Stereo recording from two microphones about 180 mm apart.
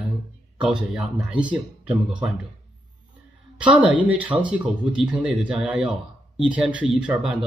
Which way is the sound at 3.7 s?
5° right (ahead or behind).